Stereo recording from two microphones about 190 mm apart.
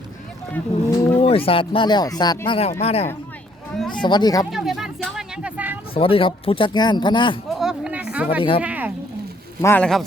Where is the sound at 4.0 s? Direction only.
20° left (ahead or behind).